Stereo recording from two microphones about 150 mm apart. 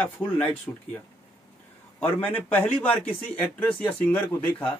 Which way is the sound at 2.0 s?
10° left (ahead or behind).